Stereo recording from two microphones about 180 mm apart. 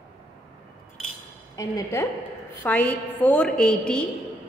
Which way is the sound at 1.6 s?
20° left (ahead or behind).